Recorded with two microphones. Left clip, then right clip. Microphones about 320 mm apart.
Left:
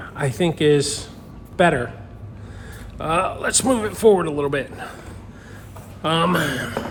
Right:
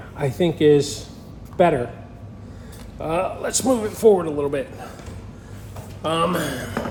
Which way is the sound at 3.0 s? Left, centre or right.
Left.